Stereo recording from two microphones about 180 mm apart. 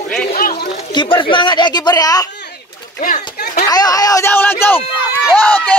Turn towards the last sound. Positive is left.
turn(degrees=10)  # may be behind; listen again after turning